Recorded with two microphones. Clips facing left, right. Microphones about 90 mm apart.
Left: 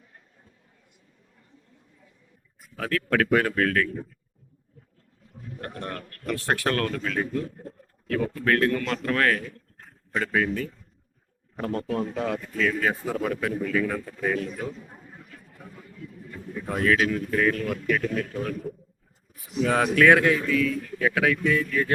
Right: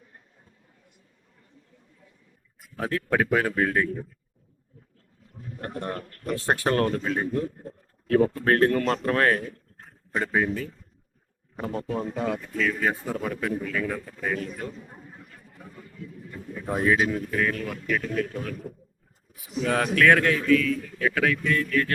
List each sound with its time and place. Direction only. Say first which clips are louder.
2.6 s a sound: right 2 dB; centre (ahead or behind)
3.2 s speech: left 1 dB; 5° right (ahead or behind)
5.5 s a man's voice: right 3 dB; 20° right (ahead or behind)
6.0 s a sound: right 3 dB; 10° right (ahead or behind)
6.2 s a man's voice: right 1 dB; 20° right (ahead or behind)
10.2 s speech: even; 15° right (ahead or behind)
10.5 s a man's voice: left 1 dB; centre (ahead or behind)
16.6 s speech: even; 15° right (ahead or behind)
17.2 s a man's voice: left 3 dB; centre (ahead or behind)